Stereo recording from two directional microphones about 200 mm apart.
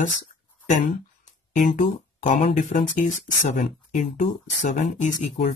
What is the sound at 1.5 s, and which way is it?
Speech, 40° left (ahead or behind).